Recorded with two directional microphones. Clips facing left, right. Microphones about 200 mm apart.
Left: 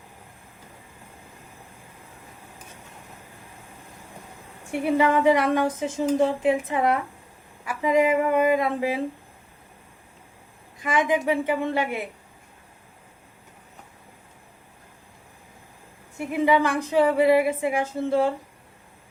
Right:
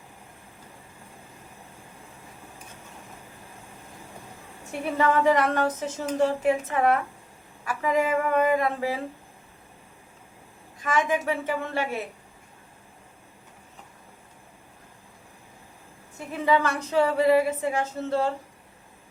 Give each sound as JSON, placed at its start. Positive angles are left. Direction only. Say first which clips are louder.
{"t": 4.7, "sound": "a woman's voice", "louder": "left 3 dB", "side_deg": 15}
{"t": 10.8, "sound": "a woman's voice", "louder": "left 2 dB", "side_deg": 15}
{"t": 16.1, "sound": "a woman's voice", "louder": "left 3 dB", "side_deg": 15}